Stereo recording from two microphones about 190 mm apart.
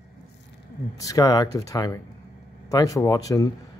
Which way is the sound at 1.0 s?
20° left (ahead or behind).